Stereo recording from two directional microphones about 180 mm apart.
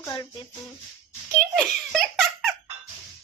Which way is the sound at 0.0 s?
20° left (ahead or behind).